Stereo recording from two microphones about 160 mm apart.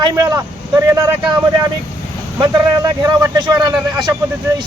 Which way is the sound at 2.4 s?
20° right (ahead or behind).